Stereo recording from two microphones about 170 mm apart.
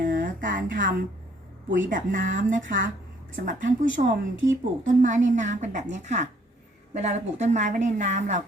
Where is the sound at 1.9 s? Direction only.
50° right (ahead or behind).